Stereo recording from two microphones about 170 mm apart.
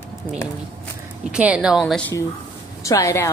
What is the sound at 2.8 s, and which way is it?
Speech, 20° left (ahead or behind).